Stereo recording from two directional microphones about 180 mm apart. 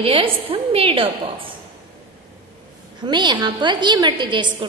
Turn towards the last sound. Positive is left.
turn(degrees=-25)  # may be behind; listen again after turning